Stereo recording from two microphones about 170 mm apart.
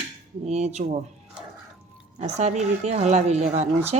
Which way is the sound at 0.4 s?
40° right (ahead or behind).